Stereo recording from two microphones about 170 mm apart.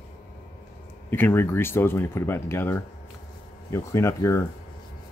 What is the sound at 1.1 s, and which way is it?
Speech, 15° left (ahead or behind).